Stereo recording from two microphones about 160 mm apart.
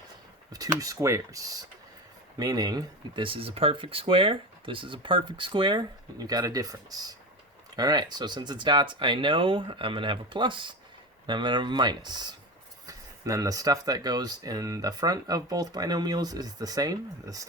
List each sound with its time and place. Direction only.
0.5 s speech: 20° right (ahead or behind)